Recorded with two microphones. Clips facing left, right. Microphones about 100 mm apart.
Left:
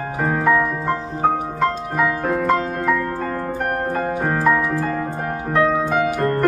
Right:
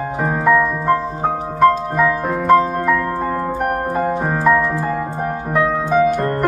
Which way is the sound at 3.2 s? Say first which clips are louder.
Right 4 dB; 15° right (ahead or behind).